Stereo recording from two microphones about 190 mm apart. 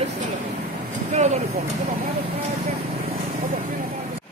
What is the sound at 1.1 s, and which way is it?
Speech, 35° right (ahead or behind).